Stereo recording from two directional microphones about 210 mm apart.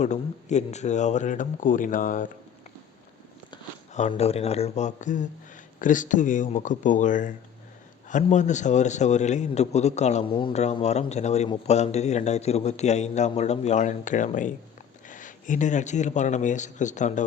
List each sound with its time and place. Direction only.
0.0 s a man's voice: 35° left (ahead or behind)
3.9 s a man's voice: 30° left (ahead or behind)